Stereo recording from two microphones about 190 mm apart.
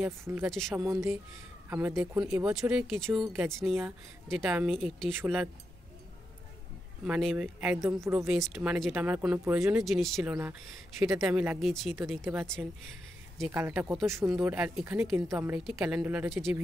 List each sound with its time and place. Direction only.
0.0 s speech: 10° right (ahead or behind)
0.5 s speech: centre (ahead or behind)
1.7 s speech: 10° right (ahead or behind)
7.1 s speech: centre (ahead or behind)
7.8 s speech: 15° right (ahead or behind)
8.3 s speech: centre (ahead or behind)
12.3 s speech: 10° right (ahead or behind)